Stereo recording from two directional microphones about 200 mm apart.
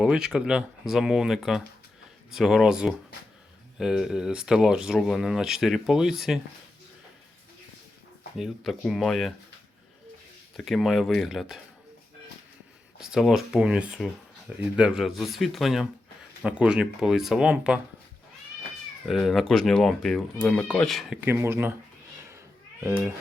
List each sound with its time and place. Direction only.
0.0 s speech: 5° right (ahead or behind)
8.4 s speech: centre (ahead or behind)
10.6 s speech: centre (ahead or behind)
13.0 s speech: centre (ahead or behind)
19.0 s speech: centre (ahead or behind)
21.2 s speech: 10° right (ahead or behind)
22.8 s speech: 10° right (ahead or behind)